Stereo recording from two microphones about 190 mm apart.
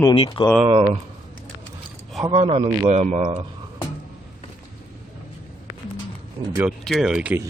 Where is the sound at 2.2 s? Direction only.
30° right (ahead or behind).